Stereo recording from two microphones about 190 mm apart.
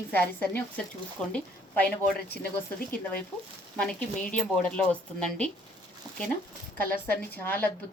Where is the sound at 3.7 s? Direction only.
5° left (ahead or behind).